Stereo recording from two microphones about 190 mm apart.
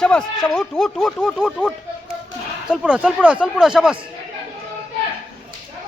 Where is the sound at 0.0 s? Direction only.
5° left (ahead or behind).